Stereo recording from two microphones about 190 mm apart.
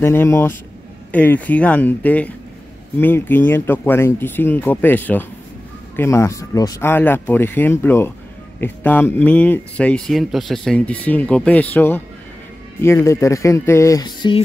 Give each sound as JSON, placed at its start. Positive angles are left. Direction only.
{"t": 0.0, "sound": "speech", "side_deg": 10}